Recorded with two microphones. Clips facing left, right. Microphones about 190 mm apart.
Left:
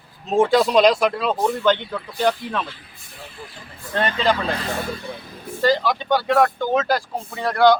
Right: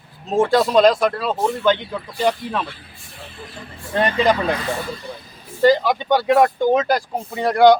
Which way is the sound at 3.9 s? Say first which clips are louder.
Right 3 dB; 10° right (ahead or behind).